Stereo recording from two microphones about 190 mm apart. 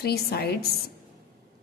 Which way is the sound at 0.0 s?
55° left (ahead or behind).